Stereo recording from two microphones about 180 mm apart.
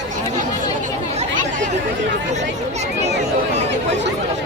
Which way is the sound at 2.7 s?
40° right (ahead or behind).